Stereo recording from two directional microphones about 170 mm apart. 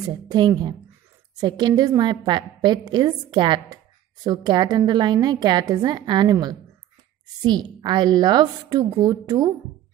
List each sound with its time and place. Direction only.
0.0 s a woman's voice: 25° right (ahead or behind)